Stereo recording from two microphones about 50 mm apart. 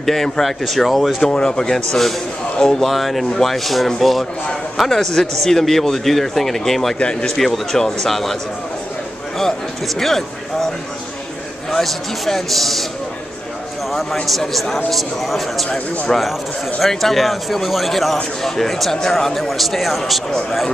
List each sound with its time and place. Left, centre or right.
0.0 s a man's voice: centre
1.2 s a man's voice: centre
7.0 s speech: centre
7.2 s a man's voice: centre
9.9 s speech: centre
11.7 s a man's voice: centre
14.2 s a man's voice: centre